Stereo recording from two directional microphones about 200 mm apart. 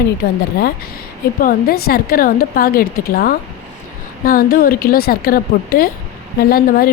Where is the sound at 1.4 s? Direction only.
50° left (ahead or behind).